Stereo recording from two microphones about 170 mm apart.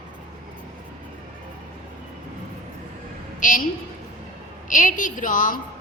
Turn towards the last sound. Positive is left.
turn(degrees=50)  # may be behind; listen again after turning